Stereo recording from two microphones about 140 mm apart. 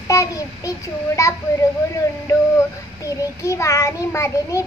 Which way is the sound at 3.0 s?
20° left (ahead or behind).